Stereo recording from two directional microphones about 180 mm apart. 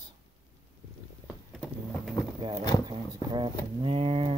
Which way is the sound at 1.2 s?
Centre (ahead or behind).